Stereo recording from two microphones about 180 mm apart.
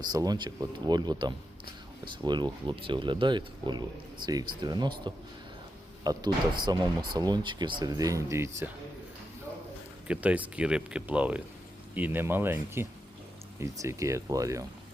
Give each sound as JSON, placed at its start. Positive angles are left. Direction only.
{"t": 0.1, "sound": "speech", "side_deg": -20}
{"t": 10.1, "sound": "speech", "side_deg": -10}